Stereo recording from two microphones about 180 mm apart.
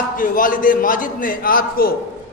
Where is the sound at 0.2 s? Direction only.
50° left (ahead or behind).